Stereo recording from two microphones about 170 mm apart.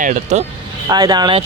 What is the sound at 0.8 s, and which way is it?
Speech, 25° right (ahead or behind).